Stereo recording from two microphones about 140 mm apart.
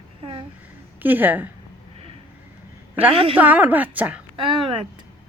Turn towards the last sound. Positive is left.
turn(degrees=-40)  # may be behind; listen again after turning